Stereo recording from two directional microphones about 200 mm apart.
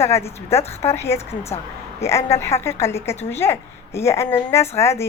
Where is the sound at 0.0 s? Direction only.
15° left (ahead or behind).